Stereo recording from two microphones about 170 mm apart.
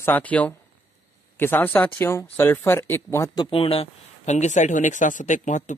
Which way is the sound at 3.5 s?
35° left (ahead or behind).